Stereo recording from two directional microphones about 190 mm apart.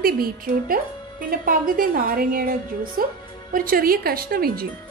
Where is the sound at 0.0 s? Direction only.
50° right (ahead or behind).